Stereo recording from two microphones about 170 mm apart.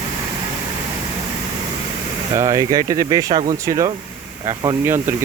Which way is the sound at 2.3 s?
20° right (ahead or behind).